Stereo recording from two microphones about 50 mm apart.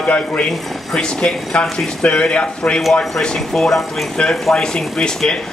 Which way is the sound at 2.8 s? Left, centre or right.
Centre.